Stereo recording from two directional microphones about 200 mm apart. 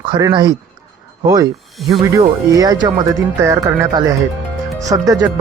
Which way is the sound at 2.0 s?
15° right (ahead or behind).